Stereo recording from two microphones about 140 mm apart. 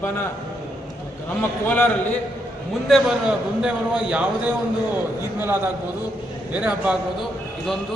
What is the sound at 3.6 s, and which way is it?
Speech, 10° right (ahead or behind).